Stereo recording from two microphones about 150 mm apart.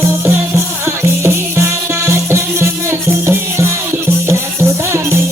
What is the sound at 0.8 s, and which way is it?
Music, 15° right (ahead or behind).